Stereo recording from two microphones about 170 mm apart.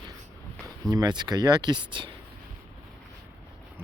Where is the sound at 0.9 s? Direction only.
25° right (ahead or behind).